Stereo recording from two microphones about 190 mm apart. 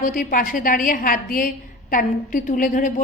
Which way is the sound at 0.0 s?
45° left (ahead or behind).